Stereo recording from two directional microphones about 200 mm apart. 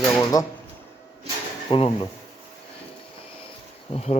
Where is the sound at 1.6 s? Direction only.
25° left (ahead or behind).